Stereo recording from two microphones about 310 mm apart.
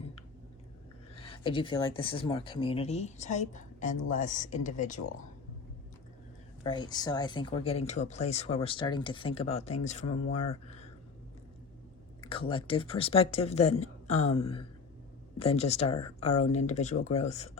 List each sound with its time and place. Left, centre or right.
1.1 s speech: centre
6.7 s speech: centre
12.2 s speech: centre